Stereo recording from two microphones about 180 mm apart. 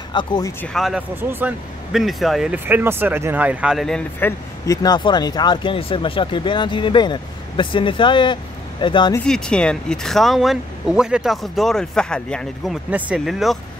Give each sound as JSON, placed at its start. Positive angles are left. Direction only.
{"t": 0.1, "sound": "speech", "side_deg": 25}
{"t": 0.7, "sound": "speech", "side_deg": 0}
{"t": 4.6, "sound": "speech", "side_deg": 25}
{"t": 9.2, "sound": "speech", "side_deg": 5}